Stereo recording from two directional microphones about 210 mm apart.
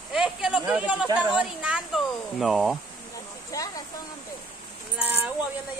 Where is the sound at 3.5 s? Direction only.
15° left (ahead or behind).